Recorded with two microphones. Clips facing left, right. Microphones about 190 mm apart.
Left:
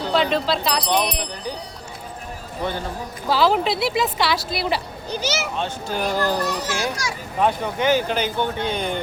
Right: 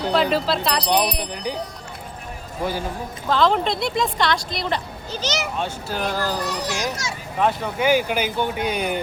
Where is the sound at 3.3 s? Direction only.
5° left (ahead or behind).